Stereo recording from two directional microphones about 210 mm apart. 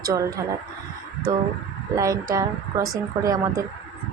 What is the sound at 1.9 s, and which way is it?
A woman's voice, 15° right (ahead or behind).